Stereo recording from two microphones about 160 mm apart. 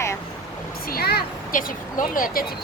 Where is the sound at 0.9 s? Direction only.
75° left (ahead or behind); by 2.4 s 60° left (ahead or behind).